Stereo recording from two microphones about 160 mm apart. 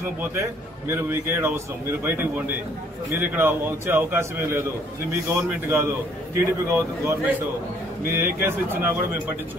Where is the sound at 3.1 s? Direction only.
10° right (ahead or behind).